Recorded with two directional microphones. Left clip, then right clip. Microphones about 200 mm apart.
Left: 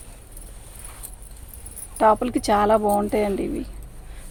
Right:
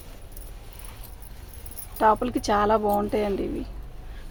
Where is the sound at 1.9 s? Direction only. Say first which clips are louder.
Left 3 dB; 30° left (ahead or behind).